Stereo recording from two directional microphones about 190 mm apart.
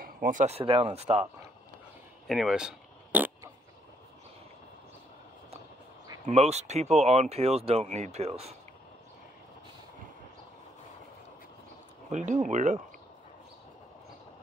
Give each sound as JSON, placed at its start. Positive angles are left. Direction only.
{"t": 0.0, "sound": "speech", "side_deg": -45}
{"t": 2.2, "sound": "speech", "side_deg": 0}
{"t": 6.2, "sound": "speech", "side_deg": -35}
{"t": 12.1, "sound": "speech", "side_deg": -40}